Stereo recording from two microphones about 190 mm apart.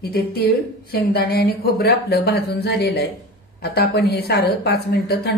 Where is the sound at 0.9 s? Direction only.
55° left (ahead or behind).